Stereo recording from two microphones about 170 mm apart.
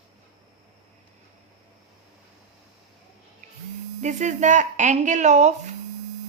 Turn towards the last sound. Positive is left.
turn(degrees=-45)  # may be behind; listen again after turning